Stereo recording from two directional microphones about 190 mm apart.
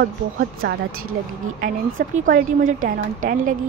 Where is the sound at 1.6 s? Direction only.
45° right (ahead or behind).